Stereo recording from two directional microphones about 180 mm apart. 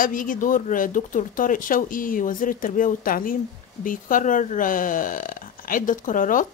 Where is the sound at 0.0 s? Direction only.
50° left (ahead or behind).